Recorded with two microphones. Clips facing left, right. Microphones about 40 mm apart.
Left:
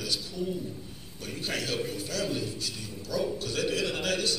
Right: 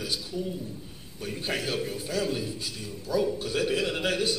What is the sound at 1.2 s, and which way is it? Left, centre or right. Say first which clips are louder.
A man's voice: right 2 dB; centre.